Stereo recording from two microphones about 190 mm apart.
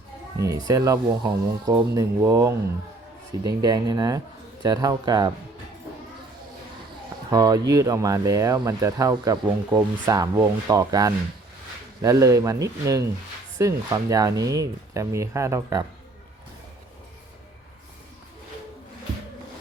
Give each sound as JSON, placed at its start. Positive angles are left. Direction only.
{"t": 0.3, "sound": "speech", "side_deg": -15}
{"t": 7.3, "sound": "speech", "side_deg": -20}